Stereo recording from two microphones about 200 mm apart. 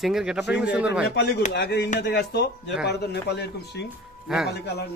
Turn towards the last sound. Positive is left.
turn(degrees=55)  # may be behind; listen again after turning